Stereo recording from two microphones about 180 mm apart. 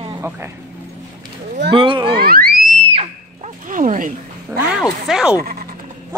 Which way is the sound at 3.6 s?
45° right (ahead or behind).